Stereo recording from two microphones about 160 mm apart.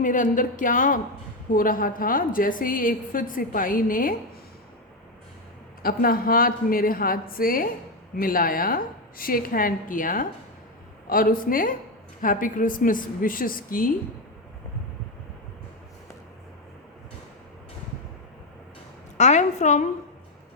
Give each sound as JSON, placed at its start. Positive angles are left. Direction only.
{"t": 0.0, "sound": "a woman's voice", "side_deg": 55}
{"t": 5.8, "sound": "a woman's voice", "side_deg": 65}
{"t": 19.1, "sound": "a woman's voice", "side_deg": 45}